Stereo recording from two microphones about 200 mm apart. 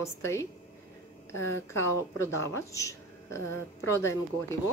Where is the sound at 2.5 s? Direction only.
15° left (ahead or behind).